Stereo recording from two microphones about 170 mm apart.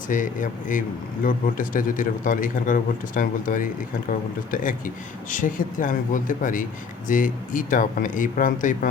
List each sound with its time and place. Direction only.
0.1 s a man's voice: 50° left (ahead or behind)